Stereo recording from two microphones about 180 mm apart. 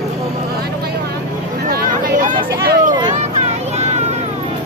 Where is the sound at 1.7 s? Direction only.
55° right (ahead or behind).